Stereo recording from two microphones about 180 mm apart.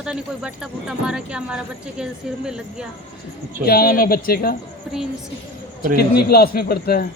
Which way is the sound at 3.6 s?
60° left (ahead or behind).